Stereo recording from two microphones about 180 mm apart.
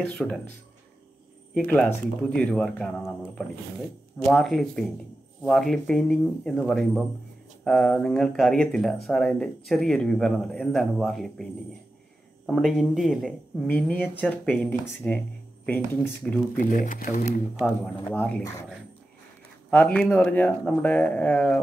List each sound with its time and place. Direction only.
0.0 s a man's voice: 5° left (ahead or behind)
12.4 s a man's voice: centre (ahead or behind)
16.5 s speech: 45° left (ahead or behind)
17.6 s speech: 10° left (ahead or behind)